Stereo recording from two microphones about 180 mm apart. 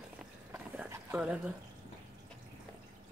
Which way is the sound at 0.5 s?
5° right (ahead or behind).